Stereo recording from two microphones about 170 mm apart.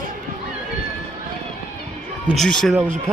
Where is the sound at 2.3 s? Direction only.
Centre (ahead or behind).